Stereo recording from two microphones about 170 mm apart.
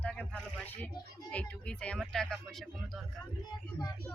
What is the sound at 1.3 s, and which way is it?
Speech, 10° left (ahead or behind).